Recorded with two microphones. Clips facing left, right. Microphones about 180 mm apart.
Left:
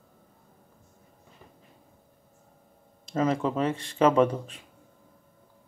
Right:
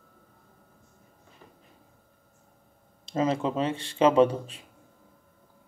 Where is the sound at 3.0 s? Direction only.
30° right (ahead or behind).